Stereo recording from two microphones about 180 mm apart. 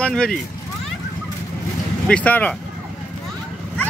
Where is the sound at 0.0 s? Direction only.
5° left (ahead or behind).